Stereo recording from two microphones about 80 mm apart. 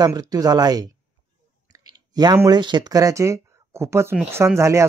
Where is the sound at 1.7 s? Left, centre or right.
Right.